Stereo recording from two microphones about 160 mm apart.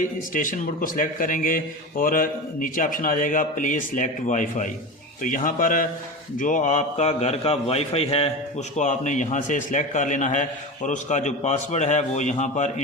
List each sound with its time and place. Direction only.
0.0 s a man's voice: 55° left (ahead or behind)